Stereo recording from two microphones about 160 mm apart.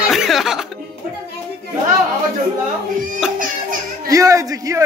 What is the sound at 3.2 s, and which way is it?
Speech, 5° right (ahead or behind).